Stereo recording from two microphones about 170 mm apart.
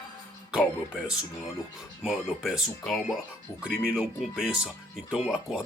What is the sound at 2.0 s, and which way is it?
Speech, centre (ahead or behind).